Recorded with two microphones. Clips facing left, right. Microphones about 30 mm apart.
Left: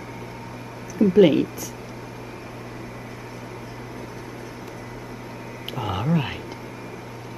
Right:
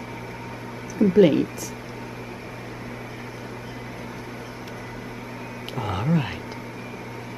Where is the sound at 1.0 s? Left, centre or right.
Centre.